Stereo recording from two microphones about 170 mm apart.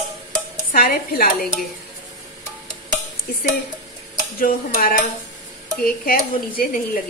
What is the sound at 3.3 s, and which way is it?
A woman's voice, 65° left (ahead or behind).